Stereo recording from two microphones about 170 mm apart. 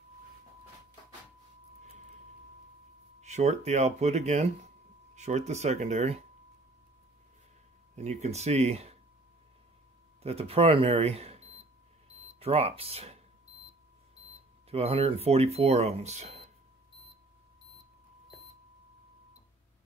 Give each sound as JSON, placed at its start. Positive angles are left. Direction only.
{"t": 3.2, "sound": "speech", "side_deg": -40}
{"t": 7.9, "sound": "speech", "side_deg": -40}
{"t": 10.2, "sound": "speech", "side_deg": -35}
{"t": 14.7, "sound": "speech", "side_deg": -35}